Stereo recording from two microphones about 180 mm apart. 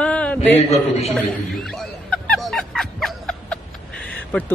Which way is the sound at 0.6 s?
35° left (ahead or behind).